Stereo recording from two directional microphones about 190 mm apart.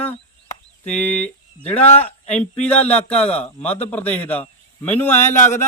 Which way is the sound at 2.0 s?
5° left (ahead or behind).